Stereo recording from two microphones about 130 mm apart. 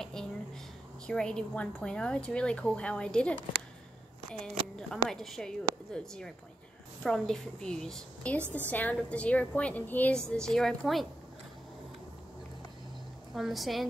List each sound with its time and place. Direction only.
0.0 s a sound: 5° left (ahead or behind)
1.0 s a woman's voice: 5° left (ahead or behind)
8.4 s a woman's voice: 15° right (ahead or behind)
8.6 s a woman's voice: 10° left (ahead or behind)
13.3 s a woman's voice: centre (ahead or behind)